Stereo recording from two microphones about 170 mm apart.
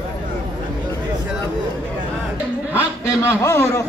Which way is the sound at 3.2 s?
15° left (ahead or behind).